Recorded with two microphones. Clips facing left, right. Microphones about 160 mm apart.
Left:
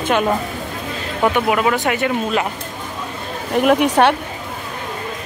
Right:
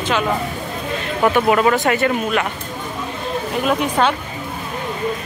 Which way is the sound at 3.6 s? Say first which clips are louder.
Left 5 dB; 70° left (ahead or behind).